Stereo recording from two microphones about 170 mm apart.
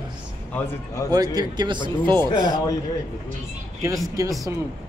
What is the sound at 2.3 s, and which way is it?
Speech, 25° left (ahead or behind).